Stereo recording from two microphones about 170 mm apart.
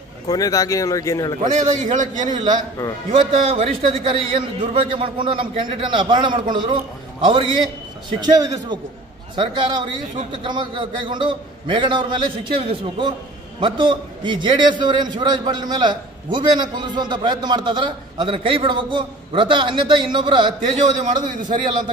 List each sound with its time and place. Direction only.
0.3 s speech: 20° left (ahead or behind)
1.4 s a man's voice: 45° right (ahead or behind)
2.2 s a man's voice: 25° right (ahead or behind)
21.3 s a man's voice: 50° right (ahead or behind)